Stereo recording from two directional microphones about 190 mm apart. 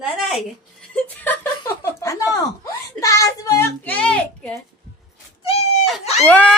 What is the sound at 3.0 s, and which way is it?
A child's voice, 15° left (ahead or behind).